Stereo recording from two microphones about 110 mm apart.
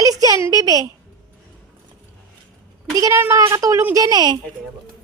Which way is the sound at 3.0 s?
30° right (ahead or behind).